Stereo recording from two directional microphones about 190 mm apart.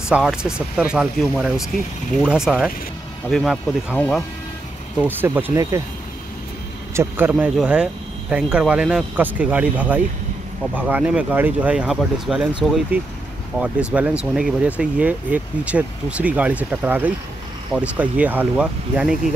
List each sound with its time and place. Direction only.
0.1 s speech: 5° right (ahead or behind)
5.0 s speech: 10° right (ahead or behind)
6.9 s speech: 10° right (ahead or behind)